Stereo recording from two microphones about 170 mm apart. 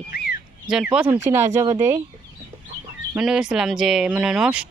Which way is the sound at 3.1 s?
5° right (ahead or behind).